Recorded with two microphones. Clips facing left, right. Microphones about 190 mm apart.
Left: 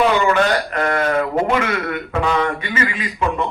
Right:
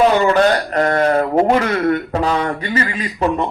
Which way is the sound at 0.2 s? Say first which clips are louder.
Right 3 dB; 35° right (ahead or behind).